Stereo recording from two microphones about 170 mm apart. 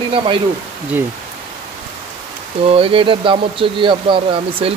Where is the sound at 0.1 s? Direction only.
30° right (ahead or behind).